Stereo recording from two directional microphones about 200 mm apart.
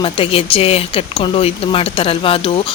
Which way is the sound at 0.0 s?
25° left (ahead or behind).